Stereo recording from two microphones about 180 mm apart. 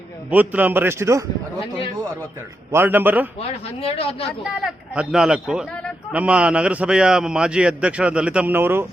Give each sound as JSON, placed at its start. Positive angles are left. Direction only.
{"t": 0.3, "sound": "a man's voice", "side_deg": -10}
{"t": 2.7, "sound": "a man's voice", "side_deg": -10}
{"t": 3.8, "sound": "speech", "side_deg": 35}
{"t": 4.4, "sound": "speech", "side_deg": -5}
{"t": 5.7, "sound": "a sound", "side_deg": 5}
{"t": 6.1, "sound": "a man's voice", "side_deg": -5}